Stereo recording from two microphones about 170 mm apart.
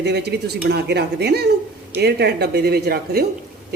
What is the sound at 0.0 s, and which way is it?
Speech, 75° right (ahead or behind).